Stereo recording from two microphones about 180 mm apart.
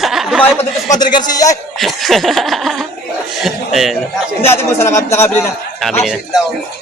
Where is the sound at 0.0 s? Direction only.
Centre (ahead or behind).